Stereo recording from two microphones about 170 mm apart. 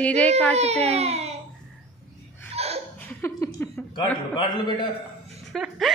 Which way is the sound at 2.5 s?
35° right (ahead or behind).